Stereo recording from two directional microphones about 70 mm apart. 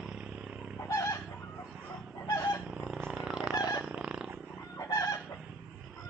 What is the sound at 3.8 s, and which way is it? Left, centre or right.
Wild animals, centre.